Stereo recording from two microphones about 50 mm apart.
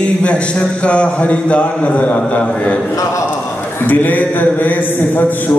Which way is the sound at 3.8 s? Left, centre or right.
Left.